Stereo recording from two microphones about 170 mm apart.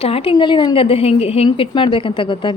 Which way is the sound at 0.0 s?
35° left (ahead or behind).